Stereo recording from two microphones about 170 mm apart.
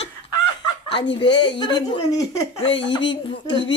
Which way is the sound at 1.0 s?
90° left.